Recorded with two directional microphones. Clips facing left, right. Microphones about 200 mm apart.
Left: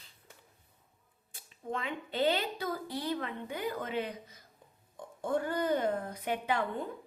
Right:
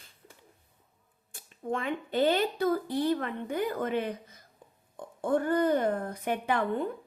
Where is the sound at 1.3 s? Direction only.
50° right (ahead or behind).